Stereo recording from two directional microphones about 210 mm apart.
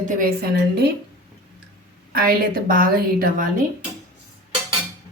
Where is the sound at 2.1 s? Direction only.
45° right (ahead or behind).